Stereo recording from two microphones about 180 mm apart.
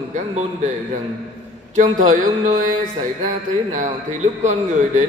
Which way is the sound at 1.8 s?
45° right (ahead or behind).